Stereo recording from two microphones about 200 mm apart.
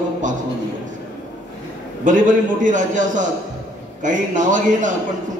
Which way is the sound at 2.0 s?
40° right (ahead or behind).